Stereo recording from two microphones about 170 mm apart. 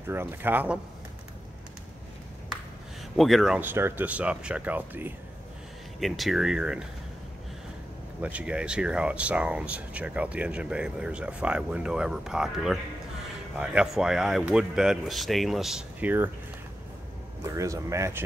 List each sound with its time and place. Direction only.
0.1 s speech: 15° right (ahead or behind)
3.2 s speech: centre (ahead or behind)
5.9 s speech: centre (ahead or behind)
8.2 s speech: 10° right (ahead or behind)
17.4 s speech: 20° right (ahead or behind)